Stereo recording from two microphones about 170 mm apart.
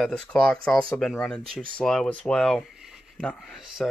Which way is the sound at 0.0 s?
5° left (ahead or behind).